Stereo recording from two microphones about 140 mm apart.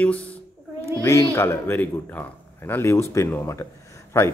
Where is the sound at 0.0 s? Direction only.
10° left (ahead or behind).